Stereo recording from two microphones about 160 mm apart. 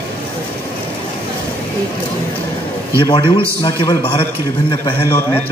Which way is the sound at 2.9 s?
30° left (ahead or behind).